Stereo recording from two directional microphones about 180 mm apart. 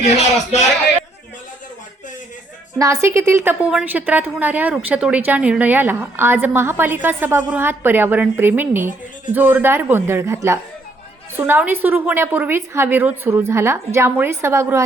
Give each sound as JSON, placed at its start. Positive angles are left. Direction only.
{"t": 0.0, "sound": "speech", "side_deg": 40}
{"t": 2.7, "sound": "a woman's voice", "side_deg": -15}